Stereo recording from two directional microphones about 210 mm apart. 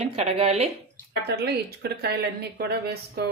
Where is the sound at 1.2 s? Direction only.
50° right (ahead or behind).